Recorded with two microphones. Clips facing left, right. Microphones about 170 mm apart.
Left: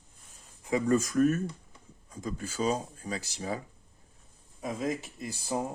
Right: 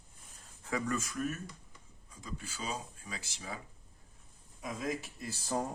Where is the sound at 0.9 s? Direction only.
40° left (ahead or behind).